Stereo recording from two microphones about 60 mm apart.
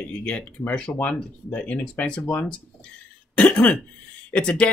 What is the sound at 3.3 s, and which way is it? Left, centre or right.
Cough, left.